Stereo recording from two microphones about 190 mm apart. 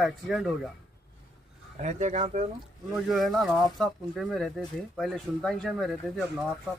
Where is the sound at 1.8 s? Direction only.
40° right (ahead or behind).